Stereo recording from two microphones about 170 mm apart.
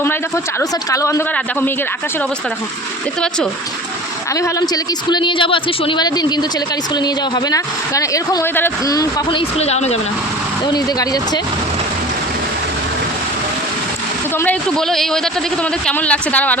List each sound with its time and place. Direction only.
0.6 s a woman's voice: 20° left (ahead or behind)
3.2 s speech: 5° left (ahead or behind)
4.4 s a woman's voice: 20° left (ahead or behind)
9.4 s speech: 40° left (ahead or behind)
10.7 s a woman's voice: 20° left (ahead or behind)
14.3 s a man's voice: 10° left (ahead or behind)